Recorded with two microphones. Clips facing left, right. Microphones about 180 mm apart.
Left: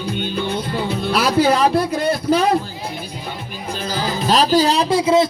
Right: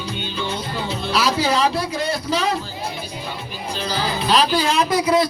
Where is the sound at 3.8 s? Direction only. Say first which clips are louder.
Left 2 dB; 45° left (ahead or behind); by 5.3 s 25° left (ahead or behind).